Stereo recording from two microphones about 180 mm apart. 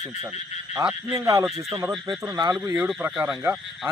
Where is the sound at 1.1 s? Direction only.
20° right (ahead or behind).